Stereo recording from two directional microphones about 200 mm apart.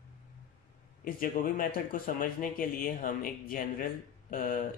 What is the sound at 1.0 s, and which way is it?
A man's voice, 45° left (ahead or behind).